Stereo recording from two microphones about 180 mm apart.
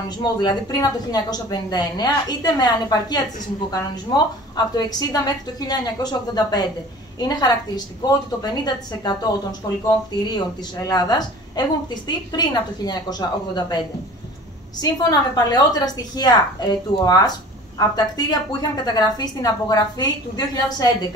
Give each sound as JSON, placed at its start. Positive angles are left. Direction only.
{"t": 0.2, "sound": "a woman's voice", "side_deg": 25}
{"t": 14.8, "sound": "a woman's voice", "side_deg": 20}